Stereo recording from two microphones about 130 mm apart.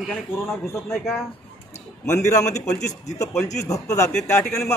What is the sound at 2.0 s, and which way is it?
Speech, 25° left (ahead or behind).